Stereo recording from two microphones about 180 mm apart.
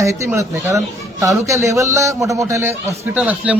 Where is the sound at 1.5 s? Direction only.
15° right (ahead or behind).